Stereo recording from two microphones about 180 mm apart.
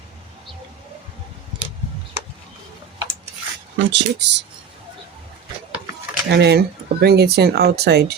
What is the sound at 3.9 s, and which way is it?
Speech, 75° right (ahead or behind).